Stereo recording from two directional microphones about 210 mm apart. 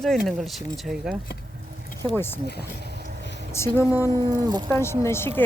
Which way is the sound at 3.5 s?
15° left (ahead or behind).